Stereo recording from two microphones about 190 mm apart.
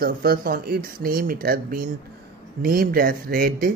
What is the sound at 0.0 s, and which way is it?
Speech, 50° right (ahead or behind).